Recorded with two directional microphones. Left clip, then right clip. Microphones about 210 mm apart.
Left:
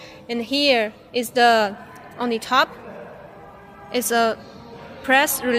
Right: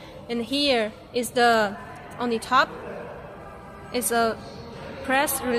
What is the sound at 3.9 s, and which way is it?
A woman's voice, 40° left (ahead or behind).